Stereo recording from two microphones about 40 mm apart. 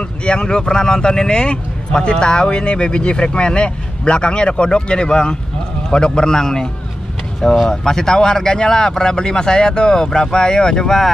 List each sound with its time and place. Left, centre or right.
0.2 s speech: left
7.7 s speech: centre